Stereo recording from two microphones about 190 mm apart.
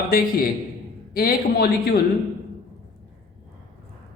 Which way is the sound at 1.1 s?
55° left (ahead or behind).